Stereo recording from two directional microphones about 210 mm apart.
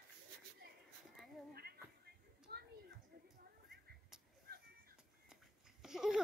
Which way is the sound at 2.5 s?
50° right (ahead or behind).